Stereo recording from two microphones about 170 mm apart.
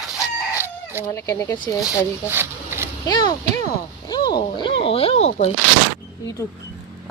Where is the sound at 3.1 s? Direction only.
25° left (ahead or behind).